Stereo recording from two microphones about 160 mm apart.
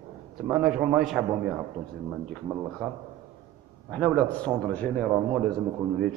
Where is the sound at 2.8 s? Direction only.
5° left (ahead or behind).